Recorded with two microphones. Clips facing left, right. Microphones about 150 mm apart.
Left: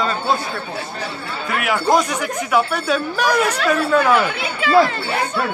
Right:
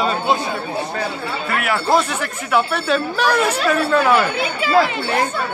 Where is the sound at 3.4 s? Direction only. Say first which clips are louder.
Right 1 dB; 10° right (ahead or behind).